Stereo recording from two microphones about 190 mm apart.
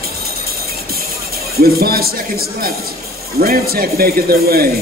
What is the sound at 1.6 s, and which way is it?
Speech, 55° right (ahead or behind).